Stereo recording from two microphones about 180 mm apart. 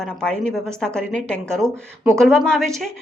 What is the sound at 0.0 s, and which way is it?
A woman's voice, 5° left (ahead or behind).